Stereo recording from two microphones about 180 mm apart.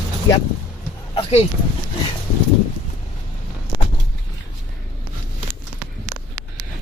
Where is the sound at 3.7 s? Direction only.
25° left (ahead or behind).